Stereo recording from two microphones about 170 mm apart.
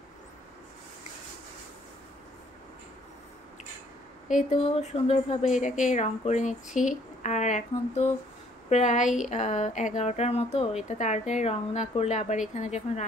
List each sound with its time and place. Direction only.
4.3 s speech: 45° left (ahead or behind)